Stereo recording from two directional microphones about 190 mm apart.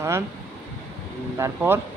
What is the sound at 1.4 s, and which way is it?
Speech, 10° right (ahead or behind).